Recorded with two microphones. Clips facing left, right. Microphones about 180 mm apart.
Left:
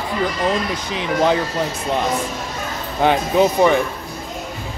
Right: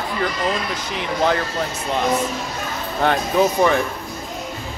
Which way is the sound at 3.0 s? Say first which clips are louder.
Left 2 dB; 15° left (ahead or behind).